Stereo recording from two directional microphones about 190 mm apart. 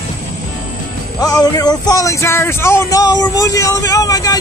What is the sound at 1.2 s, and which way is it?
Speech, 20° left (ahead or behind).